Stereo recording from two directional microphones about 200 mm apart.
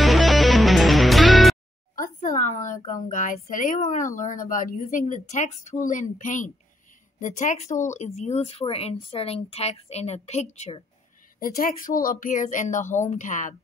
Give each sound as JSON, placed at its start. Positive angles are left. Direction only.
{"t": 0.0, "sound": "music", "side_deg": 0}
{"t": 2.0, "sound": "speech", "side_deg": 40}
{"t": 11.3, "sound": "speech", "side_deg": 45}